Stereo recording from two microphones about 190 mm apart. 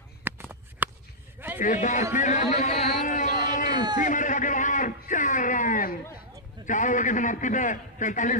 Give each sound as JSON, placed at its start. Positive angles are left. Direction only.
{"t": 0.2, "sound": "a sound", "side_deg": -10}
{"t": 1.6, "sound": "a man's voice", "side_deg": 40}
{"t": 3.7, "sound": "speech", "side_deg": -20}
{"t": 4.0, "sound": "a man's voice", "side_deg": 40}